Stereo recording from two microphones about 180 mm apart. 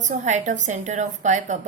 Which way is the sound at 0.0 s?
40° right (ahead or behind).